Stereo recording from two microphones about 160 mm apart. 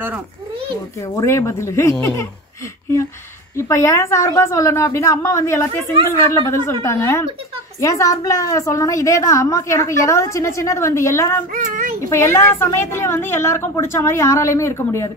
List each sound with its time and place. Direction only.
1.0 s a woman's voice: 20° left (ahead or behind)
3.5 s a woman's voice: 15° left (ahead or behind)
11.5 s child singing: 55° right (ahead or behind)
12.1 s a woman's voice: 15° left (ahead or behind)